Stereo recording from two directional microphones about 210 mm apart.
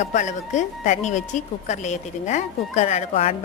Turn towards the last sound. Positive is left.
turn(degrees=30)  # may be behind; listen again after turning